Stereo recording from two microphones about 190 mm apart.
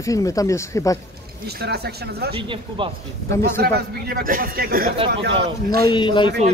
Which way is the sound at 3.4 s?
60° right (ahead or behind).